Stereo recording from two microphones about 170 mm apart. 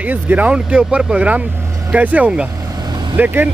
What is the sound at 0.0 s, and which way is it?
Speech, 10° right (ahead or behind).